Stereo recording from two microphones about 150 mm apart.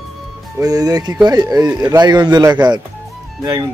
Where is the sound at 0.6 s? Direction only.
25° right (ahead or behind).